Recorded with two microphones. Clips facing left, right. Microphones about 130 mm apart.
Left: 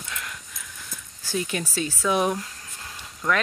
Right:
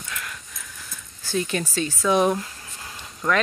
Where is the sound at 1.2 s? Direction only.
10° left (ahead or behind).